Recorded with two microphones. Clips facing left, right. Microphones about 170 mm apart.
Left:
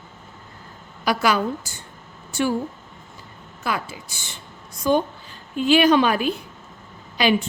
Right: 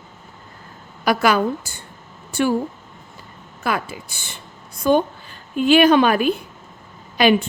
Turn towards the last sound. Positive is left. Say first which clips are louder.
# right 4 dB
turn(degrees=-55)  # may be behind; listen again after turning